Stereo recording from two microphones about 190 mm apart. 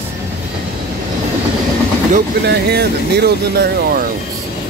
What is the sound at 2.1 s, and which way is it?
Speech, 55° right (ahead or behind).